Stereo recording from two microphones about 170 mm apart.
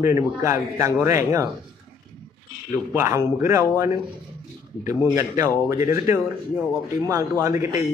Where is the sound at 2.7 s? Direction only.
15° right (ahead or behind).